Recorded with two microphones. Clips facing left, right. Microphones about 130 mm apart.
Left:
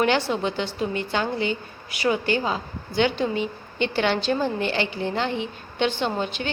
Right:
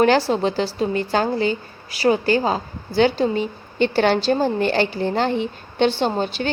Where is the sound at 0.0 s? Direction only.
35° right (ahead or behind).